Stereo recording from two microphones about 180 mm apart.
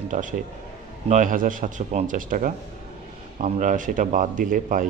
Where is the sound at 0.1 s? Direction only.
45° right (ahead or behind).